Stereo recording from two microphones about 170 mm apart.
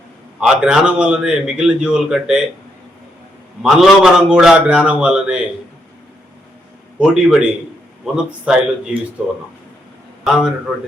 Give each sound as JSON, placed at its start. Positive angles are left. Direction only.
{"t": 0.3, "sound": "a man's voice", "side_deg": -5}
{"t": 3.6, "sound": "a man's voice", "side_deg": 0}
{"t": 7.0, "sound": "a man's voice", "side_deg": -5}